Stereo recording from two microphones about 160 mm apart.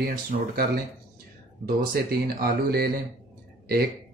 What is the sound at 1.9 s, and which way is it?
Speech, 75° right (ahead or behind).